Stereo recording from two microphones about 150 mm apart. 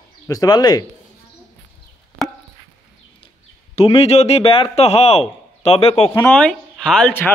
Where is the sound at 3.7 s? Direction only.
40° left (ahead or behind).